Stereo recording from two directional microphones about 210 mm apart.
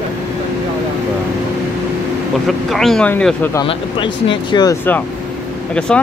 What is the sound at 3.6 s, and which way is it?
Speech, 25° left (ahead or behind).